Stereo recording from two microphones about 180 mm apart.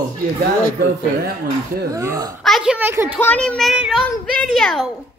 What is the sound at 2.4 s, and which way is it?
Speech, centre (ahead or behind).